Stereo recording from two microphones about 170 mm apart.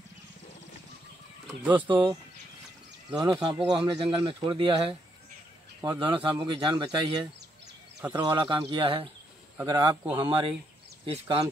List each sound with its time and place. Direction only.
1.7 s speech: 30° right (ahead or behind)
3.2 s speech: 20° right (ahead or behind)